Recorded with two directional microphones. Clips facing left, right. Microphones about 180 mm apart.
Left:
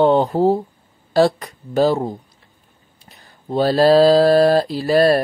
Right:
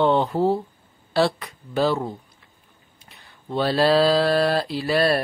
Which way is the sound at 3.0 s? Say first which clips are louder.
Left 3 dB; 40° left (ahead or behind).